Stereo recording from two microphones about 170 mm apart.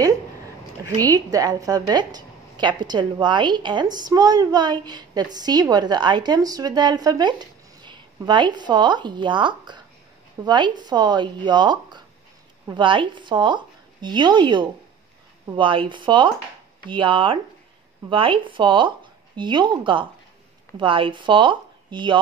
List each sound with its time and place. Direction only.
0.8 s a woman's voice: 20° right (ahead or behind)